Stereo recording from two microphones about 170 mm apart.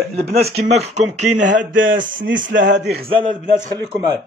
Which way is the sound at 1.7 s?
90° right.